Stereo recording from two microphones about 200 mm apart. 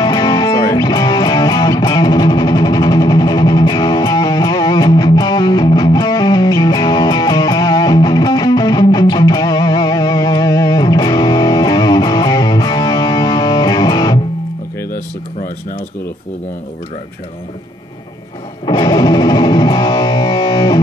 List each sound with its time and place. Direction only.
0.0 s music: 20° left (ahead or behind)
18.7 s music: 20° left (ahead or behind)